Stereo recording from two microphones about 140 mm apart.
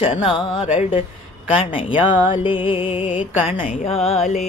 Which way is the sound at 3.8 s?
45° left (ahead or behind).